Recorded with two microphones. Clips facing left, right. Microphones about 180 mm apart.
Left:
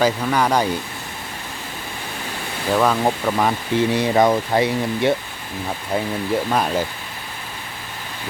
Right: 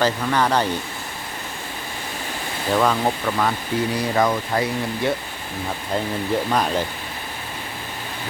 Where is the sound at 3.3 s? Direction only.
25° left (ahead or behind).